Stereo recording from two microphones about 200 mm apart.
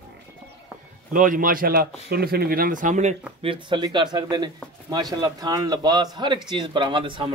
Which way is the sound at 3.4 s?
25° right (ahead or behind).